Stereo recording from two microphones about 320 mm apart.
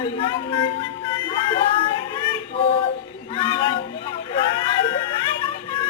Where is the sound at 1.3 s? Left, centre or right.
Centre.